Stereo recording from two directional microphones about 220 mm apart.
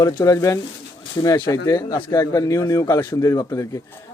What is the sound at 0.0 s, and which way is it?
A man's voice, 15° left (ahead or behind).